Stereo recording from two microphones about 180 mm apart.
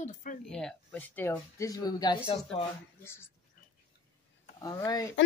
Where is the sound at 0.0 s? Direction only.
45° left (ahead or behind).